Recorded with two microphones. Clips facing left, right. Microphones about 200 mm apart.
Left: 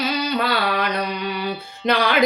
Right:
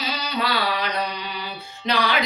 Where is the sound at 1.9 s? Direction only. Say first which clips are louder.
Left 4 dB; 55° left (ahead or behind).